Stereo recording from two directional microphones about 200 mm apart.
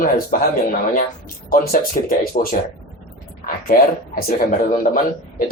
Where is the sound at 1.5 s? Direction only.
45° left (ahead or behind).